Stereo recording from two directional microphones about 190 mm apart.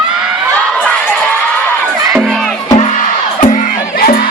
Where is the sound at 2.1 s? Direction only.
Centre (ahead or behind).